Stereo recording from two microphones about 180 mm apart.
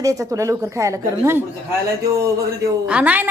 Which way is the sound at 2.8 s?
5° right (ahead or behind).